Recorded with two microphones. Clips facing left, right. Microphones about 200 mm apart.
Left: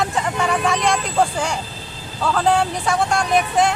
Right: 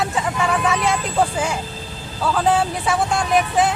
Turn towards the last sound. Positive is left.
turn(degrees=0)  # may be behind; listen again after turning